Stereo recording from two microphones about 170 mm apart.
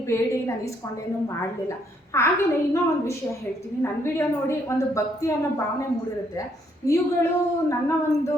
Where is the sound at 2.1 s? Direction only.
15° left (ahead or behind).